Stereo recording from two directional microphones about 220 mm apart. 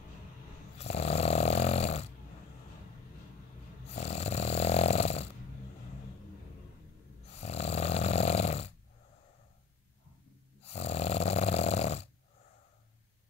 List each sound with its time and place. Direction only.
0.7 s snoring: 30° left (ahead or behind)
3.9 s snoring: 30° left (ahead or behind)
7.3 s snoring: 30° left (ahead or behind)
10.6 s snoring: 30° left (ahead or behind)